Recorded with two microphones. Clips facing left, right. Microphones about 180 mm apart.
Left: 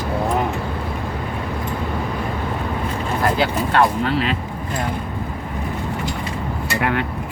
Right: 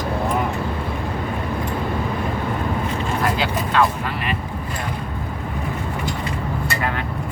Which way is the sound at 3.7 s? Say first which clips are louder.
Left 2 dB; 70° left (ahead or behind).